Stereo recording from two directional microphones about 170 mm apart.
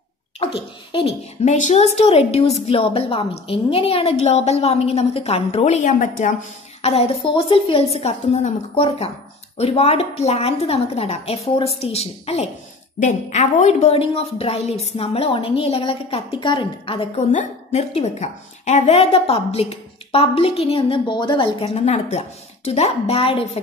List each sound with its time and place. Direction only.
0.4 s a woman's voice: 35° left (ahead or behind); by 6.3 s 50° left (ahead or behind)
6.8 s a woman's voice: 35° left (ahead or behind)